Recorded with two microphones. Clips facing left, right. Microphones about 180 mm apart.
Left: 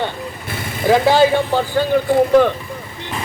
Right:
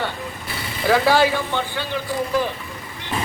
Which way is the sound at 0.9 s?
20° left (ahead or behind).